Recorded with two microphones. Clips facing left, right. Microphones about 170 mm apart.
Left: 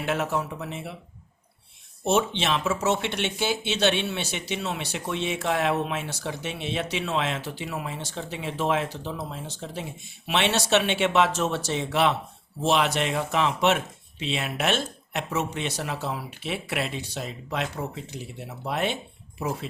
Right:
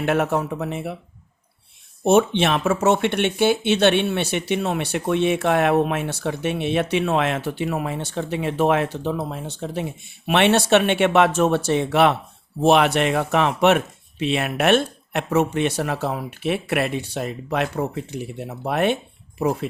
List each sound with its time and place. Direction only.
0.0 s speech: 55° right (ahead or behind)
2.0 s speech: 55° right (ahead or behind)